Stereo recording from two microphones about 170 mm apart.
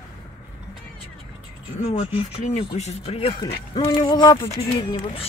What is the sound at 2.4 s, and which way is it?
Speech, 40° left (ahead or behind).